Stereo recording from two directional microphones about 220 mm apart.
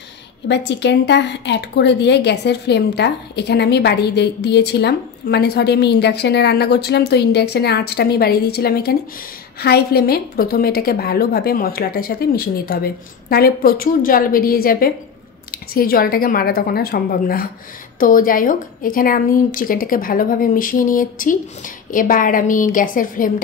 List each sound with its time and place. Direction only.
0.5 s a woman's voice: 50° left (ahead or behind)